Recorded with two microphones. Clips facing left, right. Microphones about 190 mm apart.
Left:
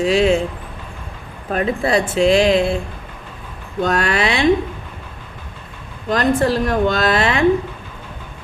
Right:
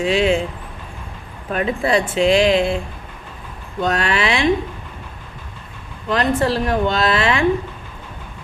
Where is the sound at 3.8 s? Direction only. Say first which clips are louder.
Left 1 dB; 40° left (ahead or behind).